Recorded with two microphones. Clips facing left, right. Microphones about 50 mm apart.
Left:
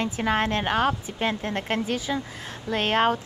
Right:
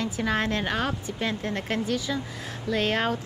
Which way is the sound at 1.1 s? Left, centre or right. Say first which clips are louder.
Left 2 dB; left.